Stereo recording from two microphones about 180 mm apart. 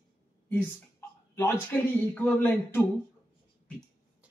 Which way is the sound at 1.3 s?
15° left (ahead or behind).